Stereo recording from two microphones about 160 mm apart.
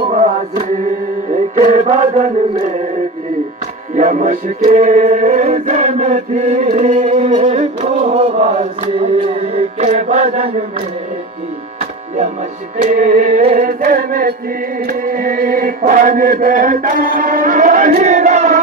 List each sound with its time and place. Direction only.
0.1 s music: 45° right (ahead or behind)
3.9 s music: 50° right (ahead or behind)
12.8 s chant: 55° right (ahead or behind)